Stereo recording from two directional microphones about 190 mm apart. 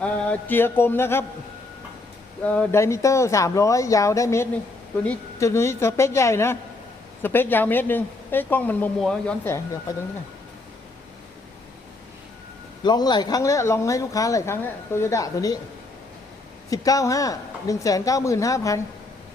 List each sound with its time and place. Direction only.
0.0 s speech: 10° left (ahead or behind)
2.4 s speech: 10° left (ahead or behind)
12.8 s speech: 20° left (ahead or behind)
16.6 s speech: 20° left (ahead or behind)